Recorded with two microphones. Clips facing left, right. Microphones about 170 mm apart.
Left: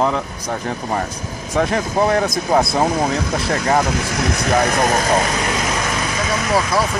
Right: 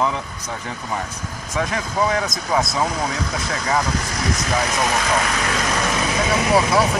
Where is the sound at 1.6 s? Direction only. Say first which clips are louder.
Left 5 dB; 50° left (ahead or behind).